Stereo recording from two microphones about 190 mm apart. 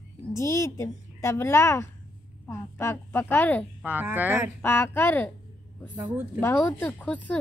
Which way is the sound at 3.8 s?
10° right (ahead or behind).